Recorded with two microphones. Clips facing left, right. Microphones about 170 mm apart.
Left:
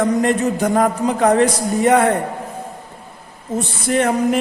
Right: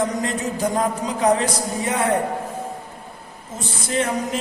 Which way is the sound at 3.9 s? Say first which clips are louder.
Left 6 dB; 60° left (ahead or behind).